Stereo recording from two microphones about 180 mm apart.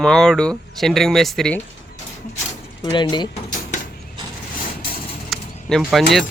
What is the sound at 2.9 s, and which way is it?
Speech, 25° left (ahead or behind).